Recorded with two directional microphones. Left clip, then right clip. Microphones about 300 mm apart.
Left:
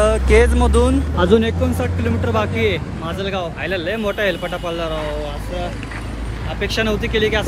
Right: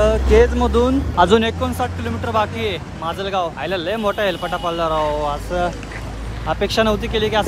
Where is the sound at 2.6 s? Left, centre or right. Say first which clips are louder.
Left 3 dB; centre.